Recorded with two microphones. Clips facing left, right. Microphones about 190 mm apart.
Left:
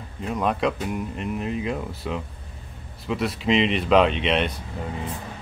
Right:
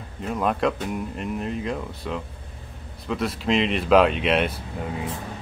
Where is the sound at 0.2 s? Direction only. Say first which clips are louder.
Even; centre (ahead or behind).